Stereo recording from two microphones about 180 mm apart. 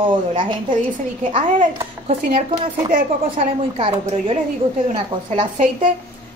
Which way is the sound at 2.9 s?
50° right (ahead or behind).